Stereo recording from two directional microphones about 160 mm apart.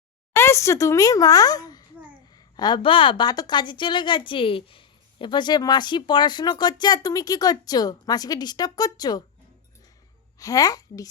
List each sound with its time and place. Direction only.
0.3 s a woman's voice: 15° left (ahead or behind)
10.3 s a woman's voice: 20° left (ahead or behind)